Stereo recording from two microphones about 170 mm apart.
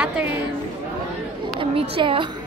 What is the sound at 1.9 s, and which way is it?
Speech, 30° right (ahead or behind).